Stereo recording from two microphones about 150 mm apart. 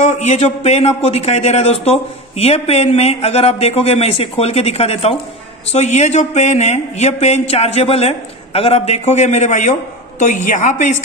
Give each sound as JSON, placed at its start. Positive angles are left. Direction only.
{"t": 0.0, "sound": "a man's voice", "side_deg": 50}